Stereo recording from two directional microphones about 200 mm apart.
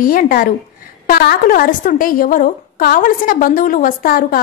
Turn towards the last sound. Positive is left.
turn(degrees=45)  # may be behind; listen again after turning